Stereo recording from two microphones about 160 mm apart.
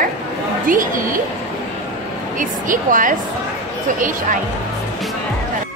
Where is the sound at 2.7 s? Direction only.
55° right (ahead or behind).